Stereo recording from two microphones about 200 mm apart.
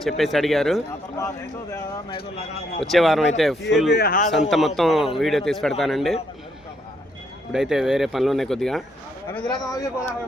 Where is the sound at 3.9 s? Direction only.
50° left (ahead or behind).